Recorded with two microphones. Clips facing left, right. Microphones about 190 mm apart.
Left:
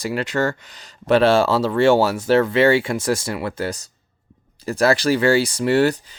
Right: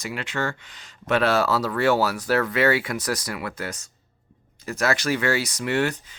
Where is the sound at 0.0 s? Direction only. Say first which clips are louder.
Left 7 dB; 35° left (ahead or behind).